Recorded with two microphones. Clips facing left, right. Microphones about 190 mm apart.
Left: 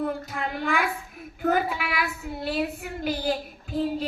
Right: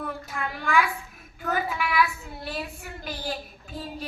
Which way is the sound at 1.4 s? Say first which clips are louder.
Left 4 dB; 50° left (ahead or behind).